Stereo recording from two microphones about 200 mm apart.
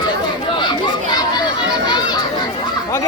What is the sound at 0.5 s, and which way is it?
Chatter, 20° left (ahead or behind).